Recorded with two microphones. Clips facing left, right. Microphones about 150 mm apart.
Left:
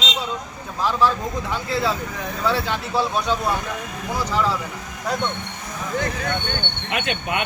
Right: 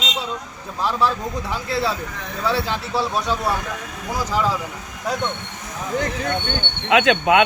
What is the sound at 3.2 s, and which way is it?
Speech, centre (ahead or behind).